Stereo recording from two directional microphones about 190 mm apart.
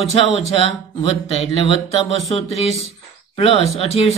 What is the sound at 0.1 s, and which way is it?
A man's voice, 30° left (ahead or behind).